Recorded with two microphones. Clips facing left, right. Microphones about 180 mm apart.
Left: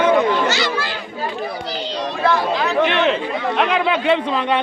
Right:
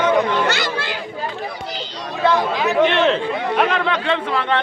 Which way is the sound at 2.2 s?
20° right (ahead or behind).